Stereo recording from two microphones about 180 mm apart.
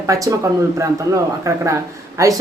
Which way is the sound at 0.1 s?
15° right (ahead or behind).